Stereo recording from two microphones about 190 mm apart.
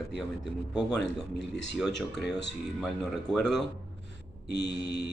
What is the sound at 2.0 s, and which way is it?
A man's voice, centre (ahead or behind).